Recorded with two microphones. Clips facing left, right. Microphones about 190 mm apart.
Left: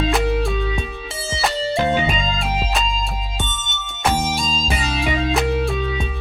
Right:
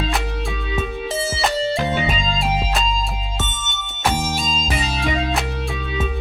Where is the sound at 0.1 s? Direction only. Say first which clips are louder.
Left 6 dB; centre (ahead or behind).